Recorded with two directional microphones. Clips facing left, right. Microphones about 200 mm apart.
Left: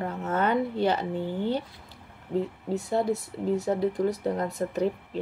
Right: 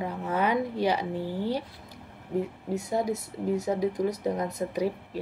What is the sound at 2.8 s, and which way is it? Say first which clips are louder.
A woman's voice: left 3 dB; 20° right (ahead or behind).